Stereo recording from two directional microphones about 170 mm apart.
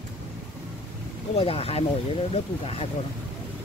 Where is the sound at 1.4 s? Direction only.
35° left (ahead or behind).